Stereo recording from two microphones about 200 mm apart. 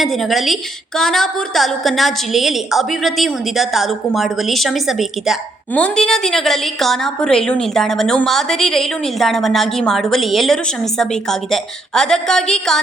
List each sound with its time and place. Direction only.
0.0 s a woman's voice: centre (ahead or behind)